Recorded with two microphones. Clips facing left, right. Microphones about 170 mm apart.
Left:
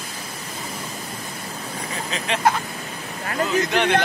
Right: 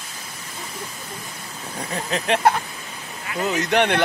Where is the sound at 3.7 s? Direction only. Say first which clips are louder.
Right 3 dB; 60° right (ahead or behind).